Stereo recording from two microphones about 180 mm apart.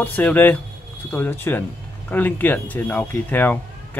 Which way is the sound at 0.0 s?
10° left (ahead or behind).